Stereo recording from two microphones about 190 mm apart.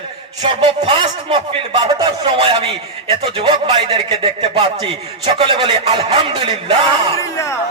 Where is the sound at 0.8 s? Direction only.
30° right (ahead or behind).